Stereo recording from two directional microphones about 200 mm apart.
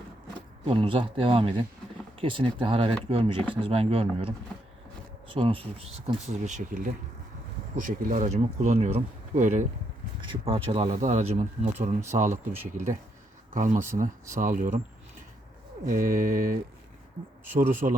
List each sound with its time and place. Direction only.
0.3 s speech: 25° right (ahead or behind)
10.2 s speech: 25° right (ahead or behind); by 14.8 s 40° right (ahead or behind)
15.9 s speech: 40° right (ahead or behind)
17.8 s speech: 30° right (ahead or behind)